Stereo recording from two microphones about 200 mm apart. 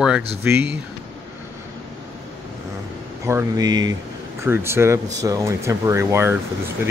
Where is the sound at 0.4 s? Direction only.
10° right (ahead or behind).